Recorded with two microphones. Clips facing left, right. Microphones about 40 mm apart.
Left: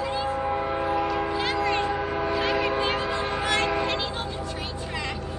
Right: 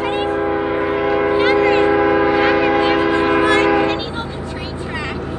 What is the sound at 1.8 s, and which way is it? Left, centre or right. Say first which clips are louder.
Train: right 13 dB; right.